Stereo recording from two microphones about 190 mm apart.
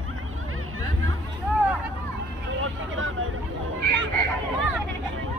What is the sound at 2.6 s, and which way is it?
Speech, 90° right.